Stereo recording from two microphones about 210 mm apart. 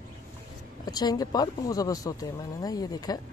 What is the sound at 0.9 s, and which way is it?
Speech, 20° left (ahead or behind).